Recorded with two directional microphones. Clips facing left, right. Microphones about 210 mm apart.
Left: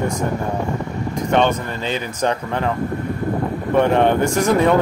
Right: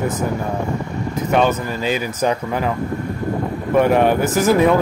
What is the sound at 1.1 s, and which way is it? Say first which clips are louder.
Speech: even; 5° right (ahead or behind).